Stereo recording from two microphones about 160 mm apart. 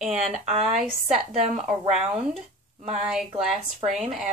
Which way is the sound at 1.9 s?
40° right (ahead or behind).